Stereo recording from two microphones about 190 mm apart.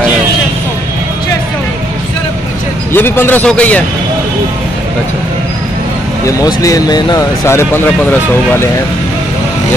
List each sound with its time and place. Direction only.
2.9 s speech: 10° left (ahead or behind)
6.2 s speech: 20° left (ahead or behind)